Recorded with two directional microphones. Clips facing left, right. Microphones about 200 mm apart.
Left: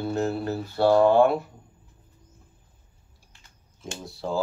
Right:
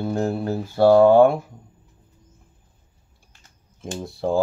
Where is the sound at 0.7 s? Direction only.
50° right (ahead or behind).